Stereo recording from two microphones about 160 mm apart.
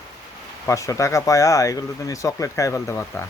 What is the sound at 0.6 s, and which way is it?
Speech, 20° left (ahead or behind).